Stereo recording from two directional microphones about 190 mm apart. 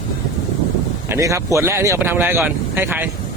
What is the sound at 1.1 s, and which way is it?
A man's voice, 15° right (ahead or behind).